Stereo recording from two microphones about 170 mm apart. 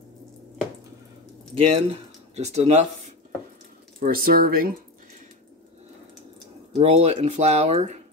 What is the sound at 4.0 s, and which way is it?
Speech, 60° right (ahead or behind).